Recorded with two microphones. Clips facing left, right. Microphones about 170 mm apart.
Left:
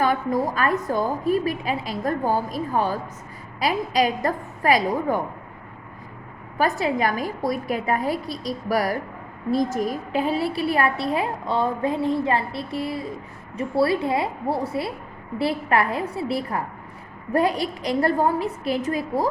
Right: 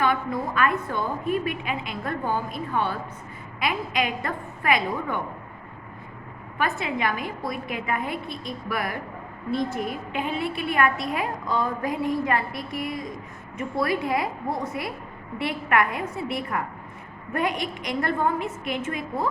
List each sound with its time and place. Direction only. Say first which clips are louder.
0.0 s a woman's voice: left 3 dB; 40° left (ahead or behind)
6.6 s a woman's voice: left 5 dB; 40° left (ahead or behind)